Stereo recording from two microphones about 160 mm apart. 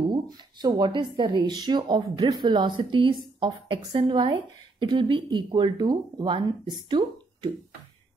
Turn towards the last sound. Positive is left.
turn(degrees=-30)  # may be behind; listen again after turning